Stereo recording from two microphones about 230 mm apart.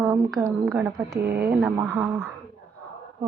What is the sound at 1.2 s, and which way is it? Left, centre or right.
Speech, right.